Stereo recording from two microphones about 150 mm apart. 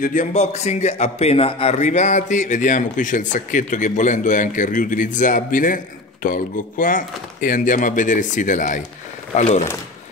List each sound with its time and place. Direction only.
0.0 s speech: 60° left (ahead or behind)